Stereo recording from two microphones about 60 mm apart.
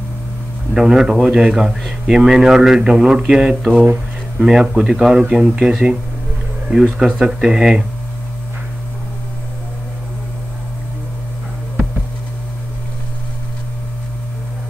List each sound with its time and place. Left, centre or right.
0.7 s a man's voice: centre
3.7 s a man's voice: right